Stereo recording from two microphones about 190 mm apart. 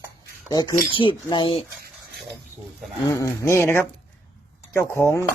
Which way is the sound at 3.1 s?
15° left (ahead or behind).